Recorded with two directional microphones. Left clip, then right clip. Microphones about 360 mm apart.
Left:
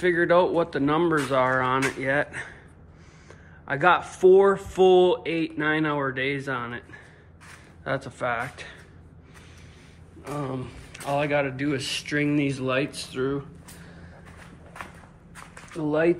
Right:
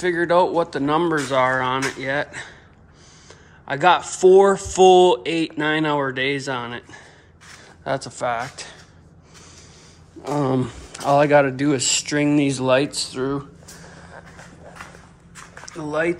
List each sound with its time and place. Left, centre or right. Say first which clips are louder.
0.0 s speech: right 2 dB; centre
3.6 s speech: right 4 dB; centre
10.5 s speech: right 11 dB; right
15.7 s speech: even; centre